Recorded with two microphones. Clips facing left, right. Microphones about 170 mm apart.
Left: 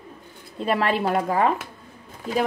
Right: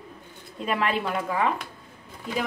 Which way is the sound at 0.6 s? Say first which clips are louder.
Left 4 dB; 35° left (ahead or behind).